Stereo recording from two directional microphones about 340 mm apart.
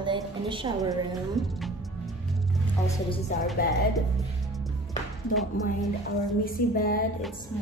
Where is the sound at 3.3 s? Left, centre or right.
Left.